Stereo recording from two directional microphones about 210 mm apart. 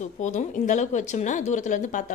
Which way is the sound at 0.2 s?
35° left (ahead or behind).